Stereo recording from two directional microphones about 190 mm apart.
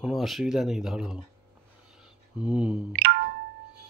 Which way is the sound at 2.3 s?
5° right (ahead or behind).